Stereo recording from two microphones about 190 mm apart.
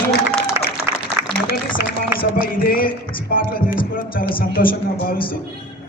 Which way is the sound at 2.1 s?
50° left (ahead or behind).